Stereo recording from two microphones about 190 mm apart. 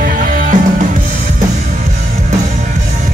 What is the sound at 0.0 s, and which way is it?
Music, 45° right (ahead or behind).